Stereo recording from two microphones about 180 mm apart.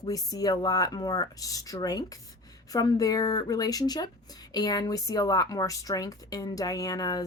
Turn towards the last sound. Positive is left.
turn(degrees=20)  # may be behind; listen again after turning